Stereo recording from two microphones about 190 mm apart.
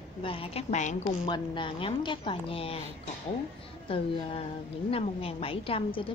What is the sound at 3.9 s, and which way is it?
A woman's voice, 30° left (ahead or behind).